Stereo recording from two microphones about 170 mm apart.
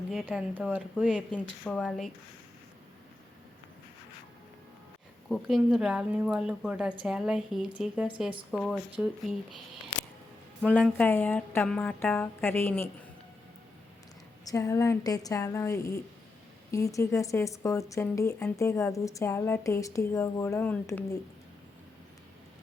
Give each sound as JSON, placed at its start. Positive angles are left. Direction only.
{"t": 0.1, "sound": "speech", "side_deg": -5}
{"t": 5.3, "sound": "speech", "side_deg": 0}
{"t": 10.7, "sound": "speech", "side_deg": 5}
{"t": 14.4, "sound": "a woman's voice", "side_deg": 20}